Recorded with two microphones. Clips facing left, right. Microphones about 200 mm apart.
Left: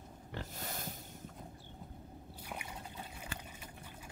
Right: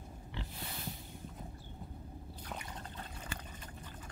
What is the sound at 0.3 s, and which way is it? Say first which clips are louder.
Pig: left 2 dB; 45° left (ahead or behind).